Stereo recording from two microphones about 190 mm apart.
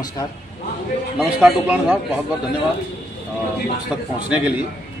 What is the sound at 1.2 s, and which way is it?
A man's voice, 5° right (ahead or behind).